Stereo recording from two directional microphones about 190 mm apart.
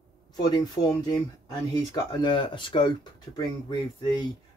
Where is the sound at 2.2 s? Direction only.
25° left (ahead or behind).